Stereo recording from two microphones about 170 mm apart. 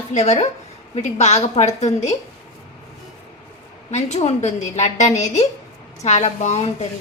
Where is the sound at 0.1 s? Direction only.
40° left (ahead or behind).